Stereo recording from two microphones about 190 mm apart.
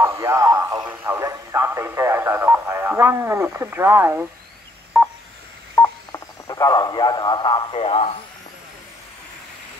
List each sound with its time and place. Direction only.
0.0 s radio: 15° right (ahead or behind)
0.7 s speech: 10° right (ahead or behind)
4.9 s telephone dialing: 5° right (ahead or behind)
5.8 s speech: 15° left (ahead or behind)